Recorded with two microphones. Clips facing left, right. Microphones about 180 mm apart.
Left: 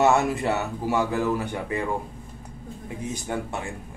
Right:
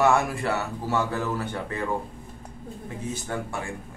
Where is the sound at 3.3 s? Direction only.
20° left (ahead or behind).